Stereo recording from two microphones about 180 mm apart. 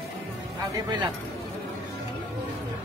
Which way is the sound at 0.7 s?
25° right (ahead or behind).